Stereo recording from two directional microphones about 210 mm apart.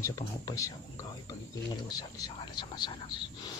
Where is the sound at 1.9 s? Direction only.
15° left (ahead or behind).